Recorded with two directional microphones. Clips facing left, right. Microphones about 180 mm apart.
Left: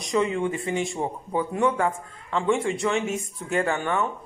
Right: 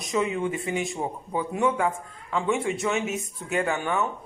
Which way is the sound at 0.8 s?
5° right (ahead or behind).